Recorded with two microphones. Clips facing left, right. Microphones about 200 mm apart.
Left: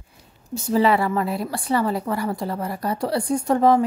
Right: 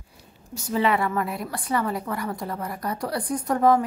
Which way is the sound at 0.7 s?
35° left (ahead or behind).